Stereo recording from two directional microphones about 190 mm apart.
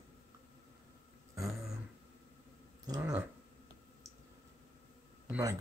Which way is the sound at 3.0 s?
10° right (ahead or behind).